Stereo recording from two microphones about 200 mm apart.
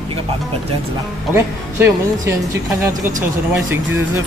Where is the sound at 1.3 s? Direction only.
10° right (ahead or behind).